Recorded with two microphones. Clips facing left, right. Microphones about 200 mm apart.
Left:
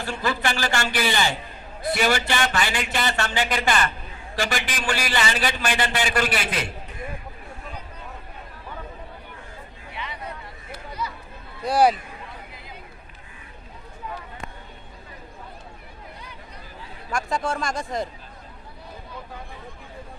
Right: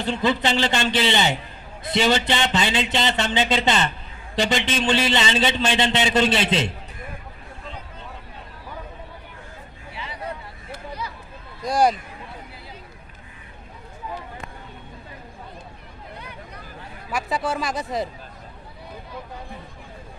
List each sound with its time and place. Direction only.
0.0 s a man's voice: 20° right (ahead or behind)
9.9 s a sound: 30° right (ahead or behind)
11.6 s speech: 5° left (ahead or behind)
17.1 s speech: 5° right (ahead or behind)